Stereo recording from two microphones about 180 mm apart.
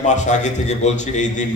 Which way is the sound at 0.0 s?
40° left (ahead or behind).